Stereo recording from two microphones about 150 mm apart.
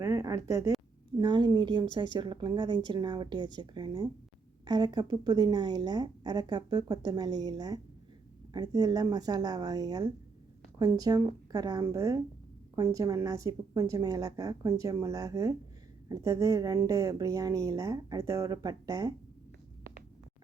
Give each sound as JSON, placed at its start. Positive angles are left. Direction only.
{"t": 0.0, "sound": "a woman's voice", "side_deg": -20}